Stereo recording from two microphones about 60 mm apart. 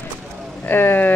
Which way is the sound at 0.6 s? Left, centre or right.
Left.